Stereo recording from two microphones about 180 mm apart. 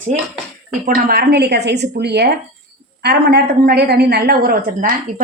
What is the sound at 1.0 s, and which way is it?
A woman's voice, 60° right (ahead or behind).